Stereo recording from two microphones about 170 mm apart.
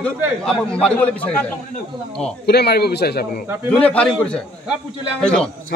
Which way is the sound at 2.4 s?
70° left (ahead or behind).